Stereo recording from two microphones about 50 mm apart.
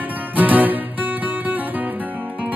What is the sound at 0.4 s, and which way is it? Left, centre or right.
Music, right.